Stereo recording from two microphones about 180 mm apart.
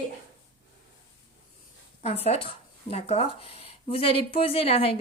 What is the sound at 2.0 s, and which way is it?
Speech, 35° left (ahead or behind).